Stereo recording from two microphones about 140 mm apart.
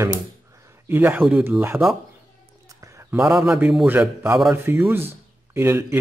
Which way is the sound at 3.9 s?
15° right (ahead or behind).